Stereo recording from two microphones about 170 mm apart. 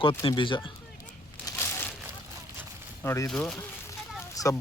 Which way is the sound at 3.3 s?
5° left (ahead or behind).